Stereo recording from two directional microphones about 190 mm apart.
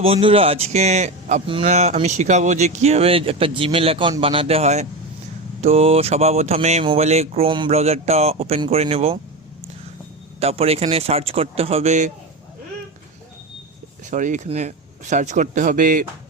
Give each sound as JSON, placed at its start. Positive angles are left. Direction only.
{"t": 0.0, "sound": "speech", "side_deg": -30}
{"t": 10.4, "sound": "speech", "side_deg": -30}
{"t": 14.1, "sound": "speech", "side_deg": -40}